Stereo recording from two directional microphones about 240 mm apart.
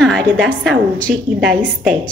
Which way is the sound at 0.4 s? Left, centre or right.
Centre.